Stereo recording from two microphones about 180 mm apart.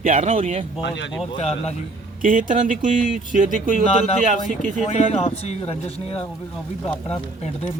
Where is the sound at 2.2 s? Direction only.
50° right (ahead or behind).